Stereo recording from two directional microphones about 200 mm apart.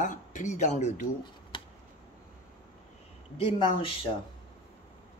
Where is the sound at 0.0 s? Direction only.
40° left (ahead or behind).